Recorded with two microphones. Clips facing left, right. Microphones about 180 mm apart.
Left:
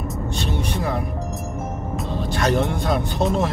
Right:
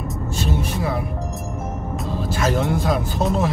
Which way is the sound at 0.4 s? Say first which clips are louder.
Right 2 dB; 5° right (ahead or behind).